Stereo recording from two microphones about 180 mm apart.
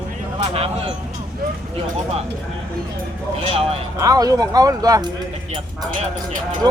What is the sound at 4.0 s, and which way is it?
Speech, 20° right (ahead or behind).